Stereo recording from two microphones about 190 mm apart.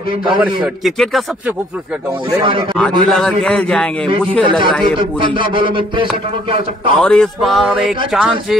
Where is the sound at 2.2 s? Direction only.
25° right (ahead or behind).